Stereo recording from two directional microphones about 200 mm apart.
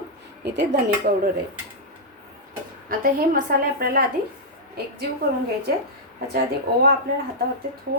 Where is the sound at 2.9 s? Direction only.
45° right (ahead or behind).